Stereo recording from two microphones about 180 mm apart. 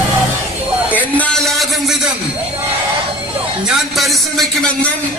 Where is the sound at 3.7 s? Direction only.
Centre (ahead or behind).